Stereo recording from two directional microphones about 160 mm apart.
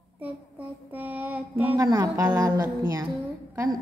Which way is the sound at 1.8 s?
20° right (ahead or behind).